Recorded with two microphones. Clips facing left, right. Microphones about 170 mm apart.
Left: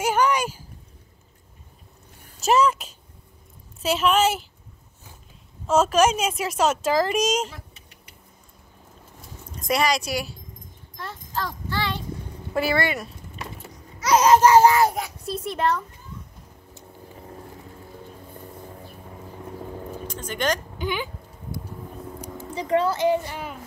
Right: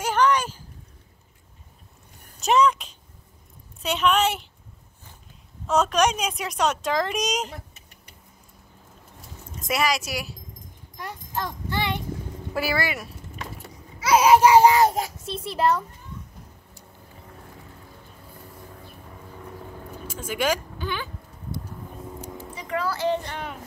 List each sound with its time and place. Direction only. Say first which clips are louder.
0.0 s a sound: even; 10° left (ahead or behind)
2.4 s speech: even; 5° left (ahead or behind)
5.7 s speech: left 3 dB; 5° left (ahead or behind)
9.6 s speech: left 2 dB; 5° right (ahead or behind)
11.0 s a sound: even; 20° right (ahead or behind)
12.5 s a child's voice: left 3 dB; 5° right (ahead or behind)
15.1 s a child's voice: left 2 dB; 25° right (ahead or behind)
20.1 s speech: right 1 dB; 10° right (ahead or behind)
20.7 s a sound: left 3 dB; 15° left (ahead or behind)
22.2 s a sound: left 2 dB; 20° left (ahead or behind)
22.6 s a woman's voice: left 6 dB; 30° left (ahead or behind)
23.0 s speech: left 3 dB; 10° left (ahead or behind)